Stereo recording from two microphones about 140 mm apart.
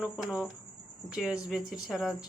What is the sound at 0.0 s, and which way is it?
Speech, centre (ahead or behind).